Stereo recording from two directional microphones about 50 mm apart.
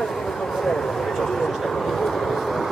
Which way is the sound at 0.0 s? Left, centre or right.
Centre.